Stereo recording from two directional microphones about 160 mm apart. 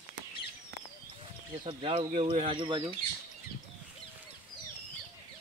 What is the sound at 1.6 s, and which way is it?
Speech, 35° right (ahead or behind).